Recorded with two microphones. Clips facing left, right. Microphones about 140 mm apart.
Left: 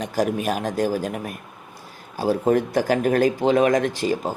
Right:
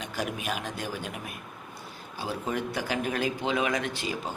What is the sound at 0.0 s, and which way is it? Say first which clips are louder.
Speech: left 10 dB; 40° left (ahead or behind).